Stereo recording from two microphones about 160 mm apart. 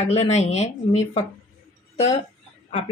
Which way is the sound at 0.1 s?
40° left (ahead or behind).